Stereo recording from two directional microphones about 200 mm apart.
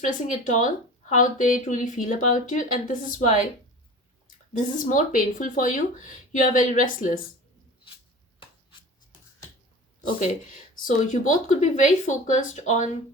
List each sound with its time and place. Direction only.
0.0 s speech: 40° left (ahead or behind)
4.5 s speech: 40° left (ahead or behind)
10.8 s speech: 40° left (ahead or behind)